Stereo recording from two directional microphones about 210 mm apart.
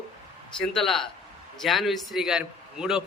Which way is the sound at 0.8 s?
Centre (ahead or behind).